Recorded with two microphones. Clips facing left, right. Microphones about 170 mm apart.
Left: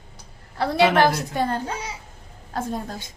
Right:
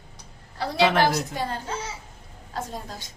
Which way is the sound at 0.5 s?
60° left (ahead or behind).